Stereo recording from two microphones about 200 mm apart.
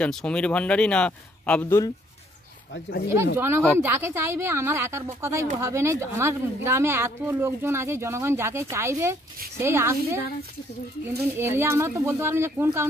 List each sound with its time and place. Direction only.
0.0 s a man's voice: 5° left (ahead or behind)
2.7 s speech: 55° left (ahead or behind)
3.3 s speech: 10° right (ahead or behind)
11.3 s speech: 10° right (ahead or behind)